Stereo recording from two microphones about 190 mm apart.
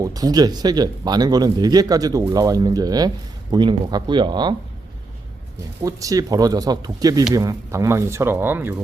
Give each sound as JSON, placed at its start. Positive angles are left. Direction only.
{"t": 0.0, "sound": "speech", "side_deg": -20}
{"t": 5.8, "sound": "speech", "side_deg": -20}